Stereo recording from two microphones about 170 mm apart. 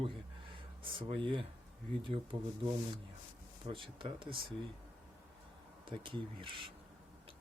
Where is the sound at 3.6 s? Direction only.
30° right (ahead or behind).